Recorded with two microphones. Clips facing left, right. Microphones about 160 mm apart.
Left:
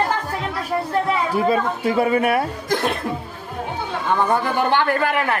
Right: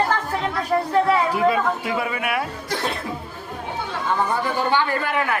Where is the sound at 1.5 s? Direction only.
35° left (ahead or behind).